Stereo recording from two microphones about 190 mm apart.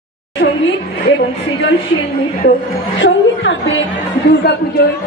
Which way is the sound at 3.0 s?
75° left (ahead or behind).